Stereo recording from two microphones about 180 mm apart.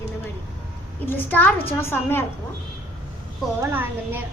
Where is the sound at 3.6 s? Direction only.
10° right (ahead or behind).